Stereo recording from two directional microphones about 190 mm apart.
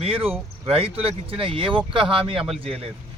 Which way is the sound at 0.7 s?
30° right (ahead or behind).